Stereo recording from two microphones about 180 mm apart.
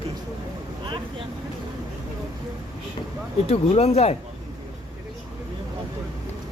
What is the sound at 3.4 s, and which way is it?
Speech, 35° left (ahead or behind).